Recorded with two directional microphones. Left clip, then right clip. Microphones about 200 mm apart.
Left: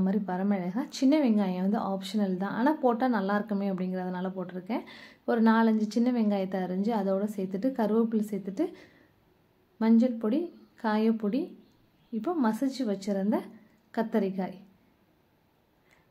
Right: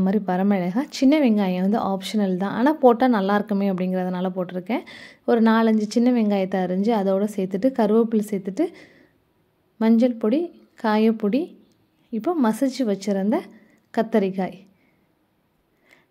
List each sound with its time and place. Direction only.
0.0 s a woman's voice: 40° right (ahead or behind)